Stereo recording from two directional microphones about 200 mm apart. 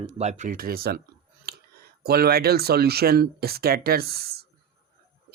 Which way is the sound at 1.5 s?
50° right (ahead or behind).